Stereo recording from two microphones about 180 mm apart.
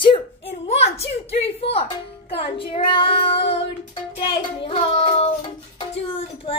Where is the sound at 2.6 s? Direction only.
30° left (ahead or behind).